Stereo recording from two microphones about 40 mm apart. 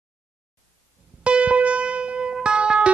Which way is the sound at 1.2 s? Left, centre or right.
Right.